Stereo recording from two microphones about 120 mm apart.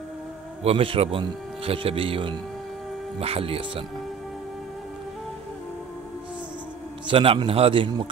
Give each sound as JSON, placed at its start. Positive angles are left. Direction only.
{"t": 0.7, "sound": "a man's voice", "side_deg": -50}
{"t": 7.1, "sound": "a man's voice", "side_deg": -45}